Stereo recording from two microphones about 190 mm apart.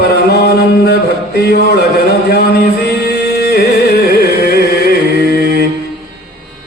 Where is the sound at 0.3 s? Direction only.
60° left (ahead or behind).